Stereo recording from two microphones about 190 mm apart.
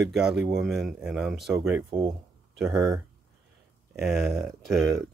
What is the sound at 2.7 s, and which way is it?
Speech, 20° right (ahead or behind).